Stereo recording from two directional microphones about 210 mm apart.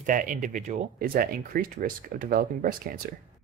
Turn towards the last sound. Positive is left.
turn(degrees=-45)  # may be behind; listen again after turning